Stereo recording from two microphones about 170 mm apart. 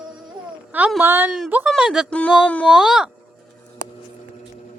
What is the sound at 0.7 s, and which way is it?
Speech, 10° right (ahead or behind).